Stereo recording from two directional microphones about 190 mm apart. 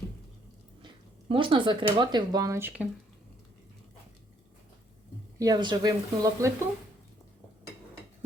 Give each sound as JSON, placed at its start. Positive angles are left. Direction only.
{"t": 1.3, "sound": "speech", "side_deg": -25}
{"t": 5.4, "sound": "speech", "side_deg": -20}